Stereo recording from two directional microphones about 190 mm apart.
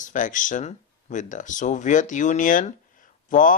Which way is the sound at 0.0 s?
45° left (ahead or behind).